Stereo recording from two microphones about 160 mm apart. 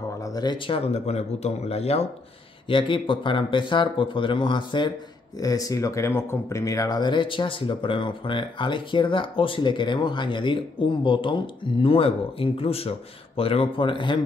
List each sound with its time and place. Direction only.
0.2 s speech: 25° left (ahead or behind)
0.9 s speech: 40° left (ahead or behind)